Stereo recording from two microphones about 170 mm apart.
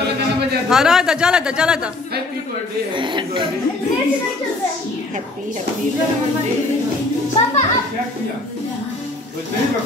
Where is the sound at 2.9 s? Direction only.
30° right (ahead or behind).